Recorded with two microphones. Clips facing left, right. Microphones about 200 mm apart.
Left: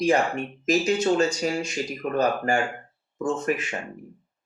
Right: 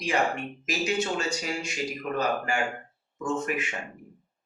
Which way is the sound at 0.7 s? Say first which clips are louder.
Left 7 dB; 40° left (ahead or behind).